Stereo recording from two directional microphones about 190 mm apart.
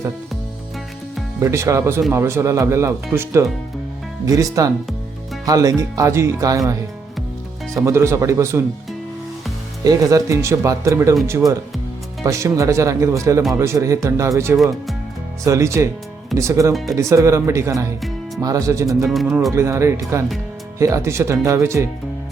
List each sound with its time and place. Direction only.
1.4 s speech: 15° right (ahead or behind)
7.8 s speech: 15° right (ahead or behind)
9.8 s speech: 20° right (ahead or behind)
14.5 s speech: centre (ahead or behind)
15.4 s speech: 15° right (ahead or behind)
19.0 s speech: centre (ahead or behind)
19.5 s speech: 15° right (ahead or behind)